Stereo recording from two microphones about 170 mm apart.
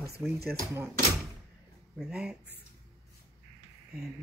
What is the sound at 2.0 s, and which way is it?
Speech, 5° right (ahead or behind).